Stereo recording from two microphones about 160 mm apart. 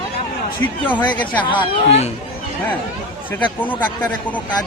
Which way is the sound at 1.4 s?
35° left (ahead or behind).